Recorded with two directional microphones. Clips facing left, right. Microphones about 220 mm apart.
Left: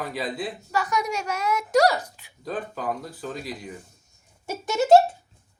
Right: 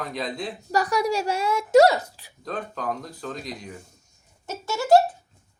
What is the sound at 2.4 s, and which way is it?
Speech, 5° left (ahead or behind).